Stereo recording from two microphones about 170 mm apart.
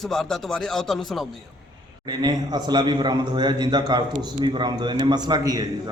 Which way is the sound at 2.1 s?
25° right (ahead or behind).